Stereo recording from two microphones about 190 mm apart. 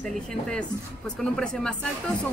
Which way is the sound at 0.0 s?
5° left (ahead or behind).